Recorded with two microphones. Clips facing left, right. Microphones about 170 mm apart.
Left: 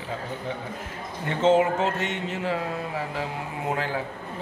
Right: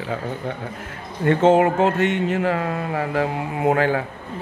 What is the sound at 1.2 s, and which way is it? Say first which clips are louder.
A man's voice: right 5 dB; 55° right (ahead or behind).